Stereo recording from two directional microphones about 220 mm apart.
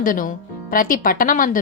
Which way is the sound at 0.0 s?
40° left (ahead or behind).